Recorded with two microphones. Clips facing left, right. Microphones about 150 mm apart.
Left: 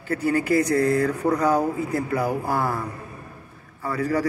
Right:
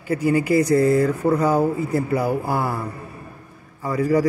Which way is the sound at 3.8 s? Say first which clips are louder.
Right 5 dB; 10° right (ahead or behind).